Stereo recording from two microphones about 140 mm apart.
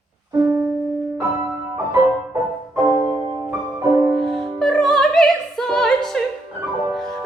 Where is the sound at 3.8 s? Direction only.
20° right (ahead or behind).